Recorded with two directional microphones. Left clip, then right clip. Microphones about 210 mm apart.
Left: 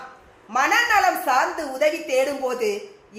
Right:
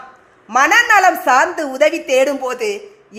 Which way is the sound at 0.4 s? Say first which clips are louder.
Right 8 dB; 45° right (ahead or behind).